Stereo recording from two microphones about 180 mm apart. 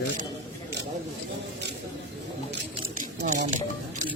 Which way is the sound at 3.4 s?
45° right (ahead or behind).